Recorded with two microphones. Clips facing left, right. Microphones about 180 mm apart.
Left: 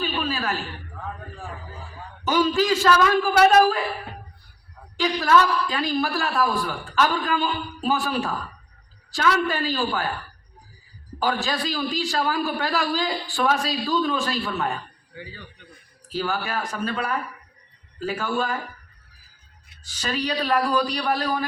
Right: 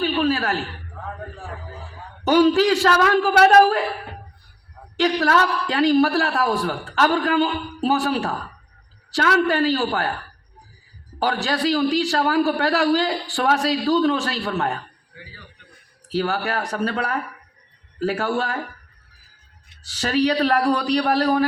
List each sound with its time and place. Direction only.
0.0 s a sound: 65° right (ahead or behind)
2.2 s a man's voice: 65° right (ahead or behind)
4.9 s a man's voice: 65° right (ahead or behind)
11.2 s a man's voice: 65° right (ahead or behind)
16.3 s a man's voice: 65° right (ahead or behind)
19.8 s a man's voice: 65° right (ahead or behind)